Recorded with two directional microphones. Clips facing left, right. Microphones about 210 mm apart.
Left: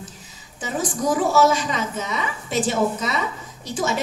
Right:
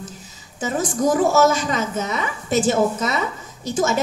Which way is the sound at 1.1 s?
45° right (ahead or behind).